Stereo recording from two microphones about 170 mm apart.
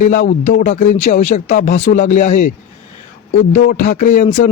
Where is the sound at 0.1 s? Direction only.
45° left (ahead or behind).